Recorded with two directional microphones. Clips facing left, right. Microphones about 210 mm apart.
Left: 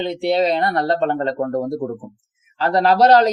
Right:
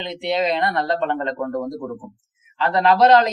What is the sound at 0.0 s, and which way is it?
Speech, 35° left (ahead or behind).